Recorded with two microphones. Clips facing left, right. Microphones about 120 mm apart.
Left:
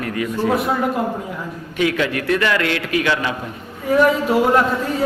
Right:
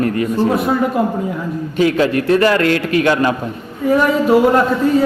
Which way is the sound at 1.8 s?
35° right (ahead or behind).